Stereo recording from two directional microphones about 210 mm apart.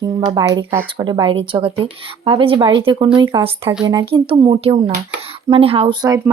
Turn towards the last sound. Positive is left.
turn(degrees=-20)  # may be behind; listen again after turning